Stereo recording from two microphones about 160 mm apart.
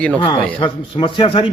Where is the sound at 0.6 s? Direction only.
30° left (ahead or behind).